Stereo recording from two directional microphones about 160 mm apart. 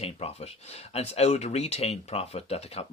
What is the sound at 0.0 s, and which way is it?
Speech, 40° left (ahead or behind).